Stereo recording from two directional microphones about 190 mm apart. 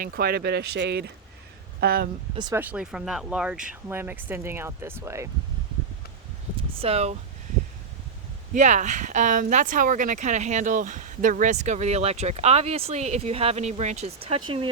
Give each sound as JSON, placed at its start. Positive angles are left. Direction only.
{"t": 0.0, "sound": "speech", "side_deg": -55}
{"t": 2.3, "sound": "speech", "side_deg": -25}
{"t": 2.6, "sound": "speech", "side_deg": -5}
{"t": 6.7, "sound": "speech", "side_deg": -30}
{"t": 8.5, "sound": "speech", "side_deg": -40}